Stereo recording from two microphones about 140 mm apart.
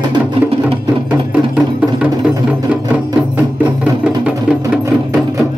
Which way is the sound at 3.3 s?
10° right (ahead or behind).